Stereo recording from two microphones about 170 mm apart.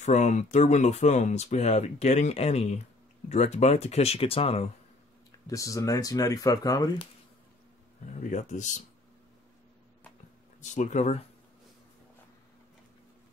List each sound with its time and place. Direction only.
0.0 s speech: 45° left (ahead or behind)
5.5 s speech: 20° left (ahead or behind)
8.2 s speech: 45° left (ahead or behind)
10.6 s speech: 45° left (ahead or behind)